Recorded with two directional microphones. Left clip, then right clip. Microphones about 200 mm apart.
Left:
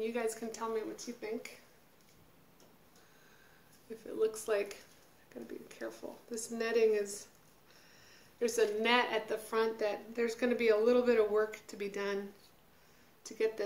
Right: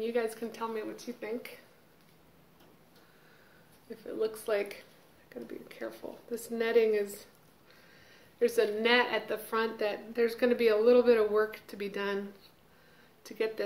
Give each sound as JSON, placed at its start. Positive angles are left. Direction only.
{"t": 0.0, "sound": "a woman's voice", "side_deg": 10}
{"t": 4.2, "sound": "a woman's voice", "side_deg": 10}
{"t": 8.4, "sound": "a woman's voice", "side_deg": 10}
{"t": 13.2, "sound": "a woman's voice", "side_deg": 5}